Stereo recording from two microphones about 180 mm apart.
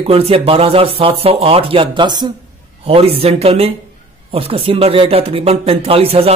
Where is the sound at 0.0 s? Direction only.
35° right (ahead or behind).